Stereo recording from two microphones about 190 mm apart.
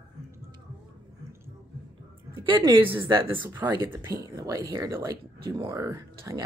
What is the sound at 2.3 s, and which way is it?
Speech, 25° right (ahead or behind).